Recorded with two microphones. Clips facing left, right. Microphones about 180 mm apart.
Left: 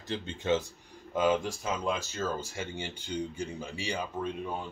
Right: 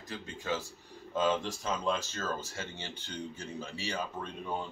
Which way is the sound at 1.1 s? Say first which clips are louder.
Left 3 dB; 10° left (ahead or behind).